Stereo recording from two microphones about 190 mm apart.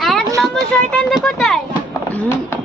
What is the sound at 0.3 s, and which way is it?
A child's voice, centre (ahead or behind).